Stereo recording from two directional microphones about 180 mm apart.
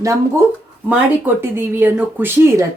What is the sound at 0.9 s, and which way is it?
Speech, 10° right (ahead or behind).